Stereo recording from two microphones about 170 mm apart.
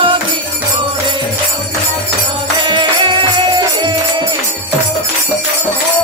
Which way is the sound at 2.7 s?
30° right (ahead or behind).